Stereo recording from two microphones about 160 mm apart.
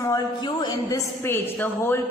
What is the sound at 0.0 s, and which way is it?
A woman's voice, 25° left (ahead or behind).